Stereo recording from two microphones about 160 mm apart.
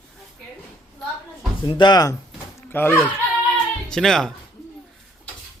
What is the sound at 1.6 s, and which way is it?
Speech, 25° left (ahead or behind).